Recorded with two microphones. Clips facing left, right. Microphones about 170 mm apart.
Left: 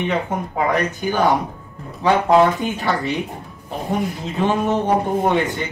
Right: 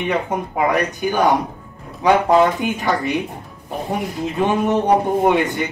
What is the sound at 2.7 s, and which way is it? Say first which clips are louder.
A man's voice: right 2 dB; 15° right (ahead or behind).